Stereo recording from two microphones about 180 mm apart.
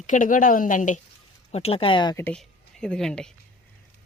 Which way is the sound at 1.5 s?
35° left (ahead or behind).